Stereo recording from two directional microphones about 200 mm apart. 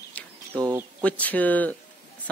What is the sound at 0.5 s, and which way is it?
Speech, 20° right (ahead or behind).